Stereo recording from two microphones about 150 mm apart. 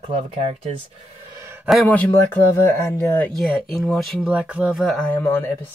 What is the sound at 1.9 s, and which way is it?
Speech, 10° left (ahead or behind).